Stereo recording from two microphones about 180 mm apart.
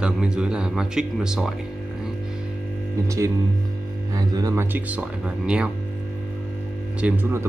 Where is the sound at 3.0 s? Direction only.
15° right (ahead or behind).